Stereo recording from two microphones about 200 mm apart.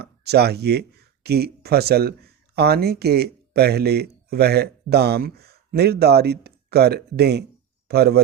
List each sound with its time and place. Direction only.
0.0 s speech: 55° right (ahead or behind)